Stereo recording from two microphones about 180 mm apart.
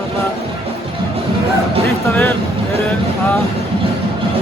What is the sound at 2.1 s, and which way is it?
Speech, 10° left (ahead or behind).